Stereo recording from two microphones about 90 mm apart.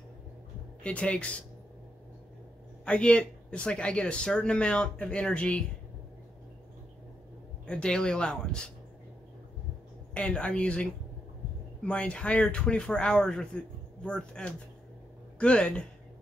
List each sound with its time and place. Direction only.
0.8 s speech: 15° left (ahead or behind)
2.8 s speech: 10° left (ahead or behind)
7.6 s speech: 10° left (ahead or behind)
10.1 s speech: 15° left (ahead or behind)